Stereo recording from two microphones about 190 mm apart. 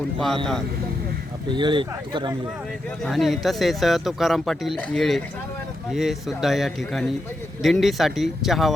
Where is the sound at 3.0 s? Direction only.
Centre (ahead or behind).